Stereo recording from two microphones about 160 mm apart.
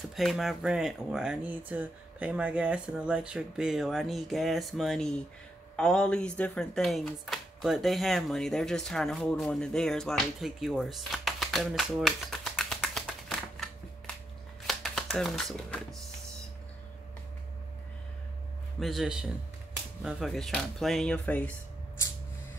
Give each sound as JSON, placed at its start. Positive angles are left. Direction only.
{"t": 0.1, "sound": "speech", "side_deg": 0}
{"t": 14.7, "sound": "shuffling cards", "side_deg": 0}
{"t": 18.8, "sound": "speech", "side_deg": 0}